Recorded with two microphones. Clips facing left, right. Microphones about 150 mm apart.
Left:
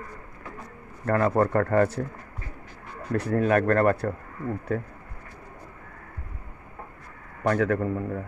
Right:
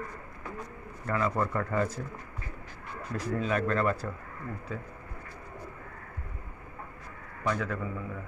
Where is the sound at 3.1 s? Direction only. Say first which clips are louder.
Left 8 dB; 65° left (ahead or behind).